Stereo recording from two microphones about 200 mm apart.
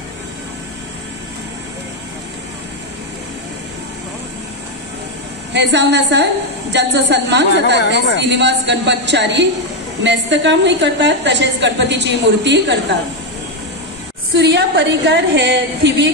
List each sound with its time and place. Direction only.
5.5 s a woman's voice: 60° right (ahead or behind)
14.3 s a woman's voice: 60° right (ahead or behind)